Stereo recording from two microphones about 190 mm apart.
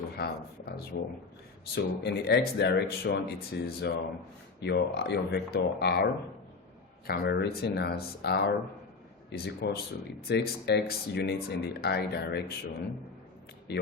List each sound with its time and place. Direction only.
0.2 s speech: 55° left (ahead or behind)
7.1 s speech: 55° left (ahead or behind)
13.7 s speech: 60° left (ahead or behind)